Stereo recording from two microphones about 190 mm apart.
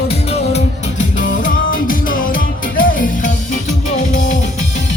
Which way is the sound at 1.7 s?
45° left (ahead or behind).